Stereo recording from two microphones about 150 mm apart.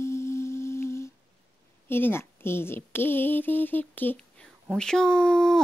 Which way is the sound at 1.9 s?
15° left (ahead or behind).